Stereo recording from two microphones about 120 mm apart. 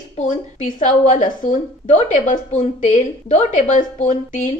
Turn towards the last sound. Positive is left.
turn(degrees=90)